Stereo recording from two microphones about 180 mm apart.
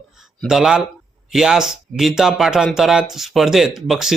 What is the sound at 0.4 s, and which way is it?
Speech, 5° right (ahead or behind).